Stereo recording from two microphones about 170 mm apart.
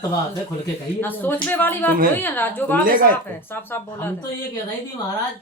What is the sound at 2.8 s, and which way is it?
Speech, 55° right (ahead or behind).